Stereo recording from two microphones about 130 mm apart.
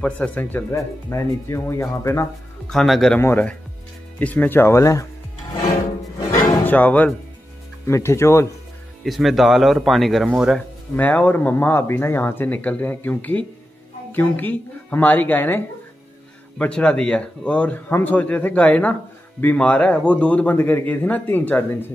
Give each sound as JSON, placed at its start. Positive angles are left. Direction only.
{"t": 0.0, "sound": "speech", "side_deg": 10}
{"t": 2.7, "sound": "speech", "side_deg": 5}
{"t": 3.2, "sound": "speech", "side_deg": 15}
{"t": 6.1, "sound": "music", "side_deg": 30}
{"t": 6.6, "sound": "speech", "side_deg": 10}
{"t": 7.8, "sound": "speech", "side_deg": 20}
{"t": 9.0, "sound": "speech", "side_deg": 0}
{"t": 11.0, "sound": "speech", "side_deg": 10}